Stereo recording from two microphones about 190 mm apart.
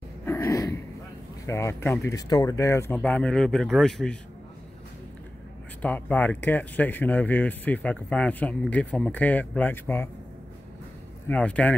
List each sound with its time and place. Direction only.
0.2 s a sound: 15° left (ahead or behind)
1.4 s speech: 15° left (ahead or behind)
5.8 s speech: 10° left (ahead or behind)
11.2 s speech: 5° left (ahead or behind)